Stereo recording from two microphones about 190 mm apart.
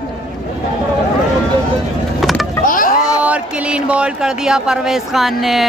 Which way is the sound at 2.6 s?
45° left (ahead or behind).